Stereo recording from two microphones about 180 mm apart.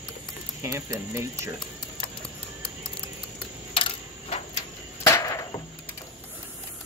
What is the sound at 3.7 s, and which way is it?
Coin, 30° left (ahead or behind).